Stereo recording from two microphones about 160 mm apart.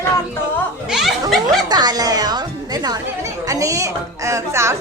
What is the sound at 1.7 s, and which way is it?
A woman's voice, 25° right (ahead or behind).